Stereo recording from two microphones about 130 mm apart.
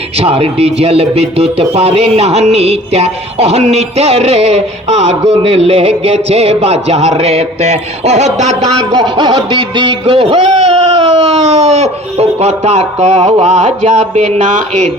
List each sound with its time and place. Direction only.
0.2 s speech: 50° right (ahead or behind)
8.9 s music: 35° right (ahead or behind); by 14.9 s 65° right (ahead or behind)